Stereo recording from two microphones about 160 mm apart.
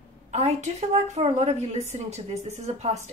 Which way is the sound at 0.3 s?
40° right (ahead or behind).